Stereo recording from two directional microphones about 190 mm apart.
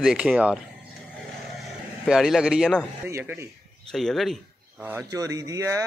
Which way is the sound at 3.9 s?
Centre (ahead or behind).